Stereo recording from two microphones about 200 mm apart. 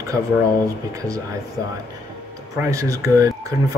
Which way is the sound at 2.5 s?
15° right (ahead or behind).